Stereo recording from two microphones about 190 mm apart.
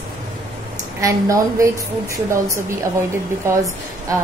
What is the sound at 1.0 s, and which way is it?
Speech, 15° right (ahead or behind).